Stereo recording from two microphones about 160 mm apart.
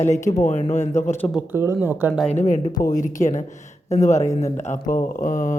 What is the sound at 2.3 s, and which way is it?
Speech, 50° left (ahead or behind).